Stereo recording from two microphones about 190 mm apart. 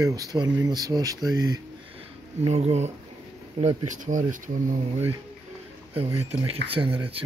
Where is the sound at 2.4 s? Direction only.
35° right (ahead or behind).